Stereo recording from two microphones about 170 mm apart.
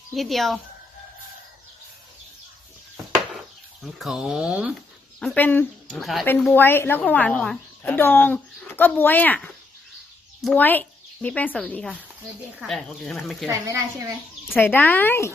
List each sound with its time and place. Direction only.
0.1 s speech: centre (ahead or behind)
3.9 s speech: centre (ahead or behind)
5.2 s speech: 5° left (ahead or behind)
6.4 s a woman's voice: 10° left (ahead or behind)
13.5 s speech: 20° right (ahead or behind)
14.5 s a woman's voice: 10° left (ahead or behind)